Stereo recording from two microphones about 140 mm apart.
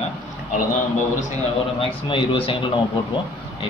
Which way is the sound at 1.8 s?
40° left (ahead or behind).